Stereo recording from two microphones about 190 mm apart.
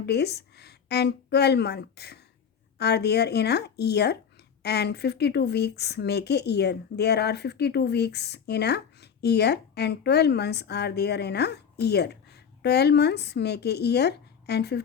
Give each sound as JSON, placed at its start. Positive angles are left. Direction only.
{"t": 0.0, "sound": "speech", "side_deg": 60}